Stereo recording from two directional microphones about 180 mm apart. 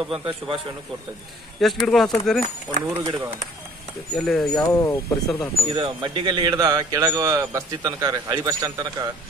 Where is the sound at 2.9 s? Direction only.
15° right (ahead or behind).